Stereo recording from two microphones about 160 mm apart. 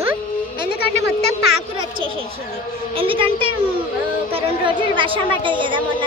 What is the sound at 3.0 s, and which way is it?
A woman's voice, 35° right (ahead or behind).